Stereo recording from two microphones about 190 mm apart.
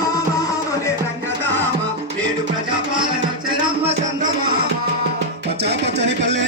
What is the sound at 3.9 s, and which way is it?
Music, 45° right (ahead or behind).